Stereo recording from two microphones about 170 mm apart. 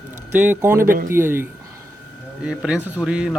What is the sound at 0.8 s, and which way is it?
Speech, 55° right (ahead or behind).